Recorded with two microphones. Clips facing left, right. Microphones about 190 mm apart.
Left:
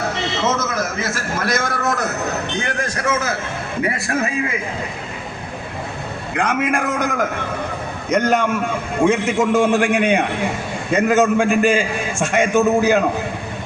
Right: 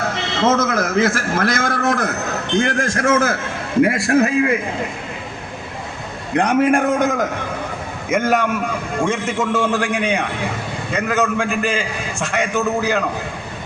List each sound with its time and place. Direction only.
0.4 s a man's voice: 55° right (ahead or behind)
6.3 s a man's voice: 35° right (ahead or behind)
8.1 s a man's voice: centre (ahead or behind); by 13.1 s 20° left (ahead or behind)